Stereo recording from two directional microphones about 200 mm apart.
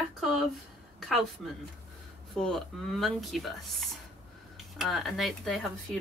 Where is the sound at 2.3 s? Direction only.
5° left (ahead or behind).